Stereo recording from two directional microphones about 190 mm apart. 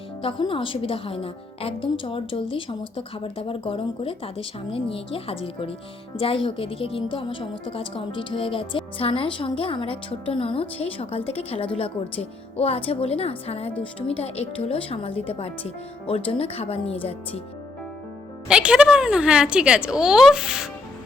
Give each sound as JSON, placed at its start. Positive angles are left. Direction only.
{"t": 0.2, "sound": "a woman's voice", "side_deg": 30}
{"t": 18.4, "sound": "a woman's voice", "side_deg": -5}